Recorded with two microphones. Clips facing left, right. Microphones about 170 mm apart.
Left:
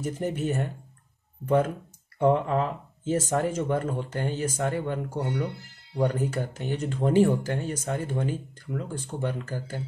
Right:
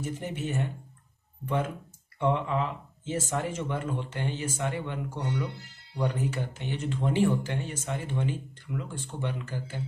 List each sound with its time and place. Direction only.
0.0 s speech: 40° left (ahead or behind)
2.1 s speech: 40° left (ahead or behind)